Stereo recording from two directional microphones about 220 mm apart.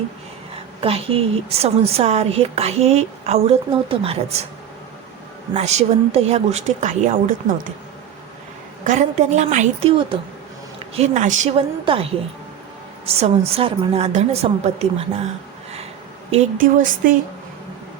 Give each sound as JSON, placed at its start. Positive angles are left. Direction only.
{"t": 0.8, "sound": "a woman's voice", "side_deg": -25}
{"t": 5.5, "sound": "a woman's voice", "side_deg": -30}
{"t": 8.8, "sound": "a woman's voice", "side_deg": -35}
{"t": 16.3, "sound": "a woman's voice", "side_deg": -35}